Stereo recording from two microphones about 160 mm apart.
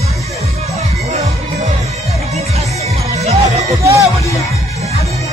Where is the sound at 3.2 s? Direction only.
45° right (ahead or behind).